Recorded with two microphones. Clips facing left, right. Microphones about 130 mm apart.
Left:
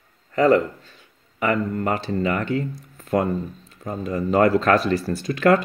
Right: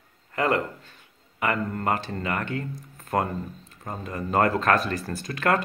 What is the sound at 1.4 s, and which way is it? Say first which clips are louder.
Speech: left 4 dB; 45° right (ahead or behind).